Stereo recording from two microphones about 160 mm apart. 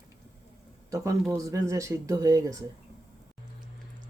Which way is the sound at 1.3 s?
20° right (ahead or behind).